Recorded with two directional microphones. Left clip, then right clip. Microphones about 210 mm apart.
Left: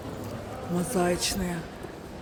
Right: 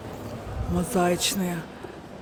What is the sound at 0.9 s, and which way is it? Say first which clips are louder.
Speech: right 3 dB; 15° right (ahead or behind).